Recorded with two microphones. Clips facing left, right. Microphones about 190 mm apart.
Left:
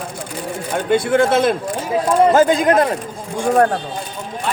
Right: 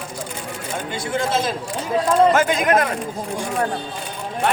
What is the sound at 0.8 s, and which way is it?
Speech, 60° left (ahead or behind).